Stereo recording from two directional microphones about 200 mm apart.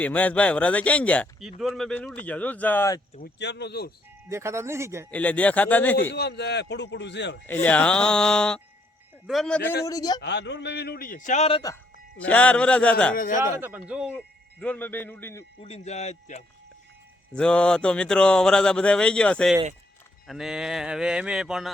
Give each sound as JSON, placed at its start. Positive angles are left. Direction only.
{"t": 0.0, "sound": "speech", "side_deg": 10}
{"t": 3.2, "sound": "a man's voice", "side_deg": 60}
{"t": 4.3, "sound": "speech", "side_deg": -15}
{"t": 5.1, "sound": "speech", "side_deg": 5}
{"t": 6.0, "sound": "a man's voice", "side_deg": 55}
{"t": 7.4, "sound": "speech", "side_deg": 10}
{"t": 9.8, "sound": "speech", "side_deg": 20}
{"t": 10.2, "sound": "a man's voice", "side_deg": 60}
{"t": 12.2, "sound": "speech", "side_deg": 5}
{"t": 13.1, "sound": "speech", "side_deg": 40}
{"t": 13.4, "sound": "speech", "side_deg": -10}
{"t": 14.6, "sound": "speech", "side_deg": 10}
{"t": 15.6, "sound": "speech", "side_deg": 30}
{"t": 17.3, "sound": "speech", "side_deg": 5}